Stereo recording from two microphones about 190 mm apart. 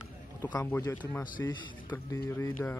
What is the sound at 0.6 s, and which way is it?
A man's voice, 10° left (ahead or behind).